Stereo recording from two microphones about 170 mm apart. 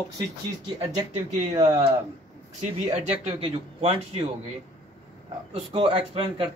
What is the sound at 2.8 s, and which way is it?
Speech, 40° right (ahead or behind).